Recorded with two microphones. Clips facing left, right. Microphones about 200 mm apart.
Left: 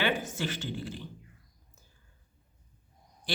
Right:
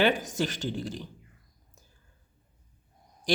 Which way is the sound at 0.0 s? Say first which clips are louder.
Right 5 dB; 40° right (ahead or behind).